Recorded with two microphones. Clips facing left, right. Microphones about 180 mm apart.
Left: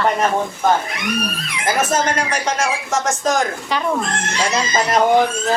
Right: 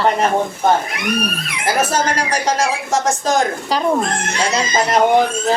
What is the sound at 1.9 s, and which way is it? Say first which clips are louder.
A woman's voice: right 1 dB; 35° right (ahead or behind).